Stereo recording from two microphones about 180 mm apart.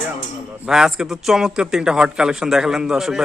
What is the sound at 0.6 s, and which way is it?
A man's voice, 5° right (ahead or behind).